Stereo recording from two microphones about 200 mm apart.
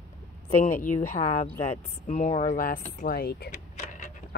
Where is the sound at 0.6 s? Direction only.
45° left (ahead or behind).